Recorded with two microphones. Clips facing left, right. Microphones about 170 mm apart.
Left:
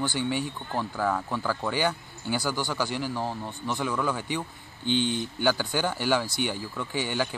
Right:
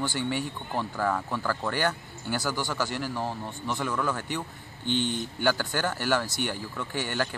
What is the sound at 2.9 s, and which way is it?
Speech, 10° left (ahead or behind).